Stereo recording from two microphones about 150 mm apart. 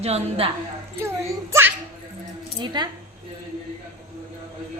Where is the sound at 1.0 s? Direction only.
15° right (ahead or behind).